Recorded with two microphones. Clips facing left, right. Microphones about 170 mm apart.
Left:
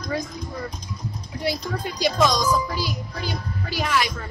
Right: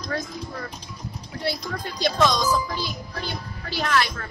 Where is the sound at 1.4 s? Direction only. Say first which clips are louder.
Left 2 dB; 10° left (ahead or behind).